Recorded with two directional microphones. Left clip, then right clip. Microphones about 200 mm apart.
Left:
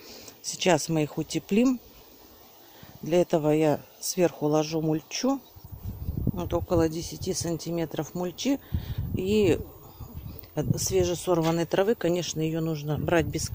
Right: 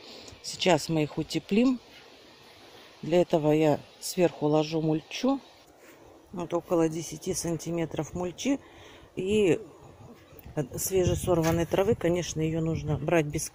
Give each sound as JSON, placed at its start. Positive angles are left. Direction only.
{"t": 0.1, "sound": "speech", "side_deg": 10}
{"t": 3.1, "sound": "speech", "side_deg": 5}
{"t": 6.9, "sound": "speech", "side_deg": 20}
{"t": 7.8, "sound": "speech", "side_deg": 10}